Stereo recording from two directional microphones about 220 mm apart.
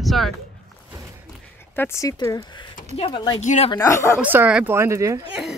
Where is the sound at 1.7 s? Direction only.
10° left (ahead or behind).